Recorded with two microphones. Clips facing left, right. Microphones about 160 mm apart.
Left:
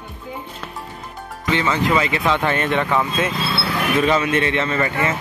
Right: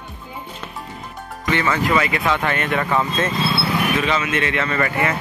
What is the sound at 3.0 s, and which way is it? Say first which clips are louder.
Speech: right 1 dB; 5° left (ahead or behind).